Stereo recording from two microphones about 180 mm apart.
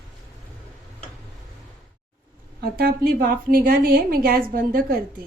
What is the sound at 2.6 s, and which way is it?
A woman's voice, 60° right (ahead or behind).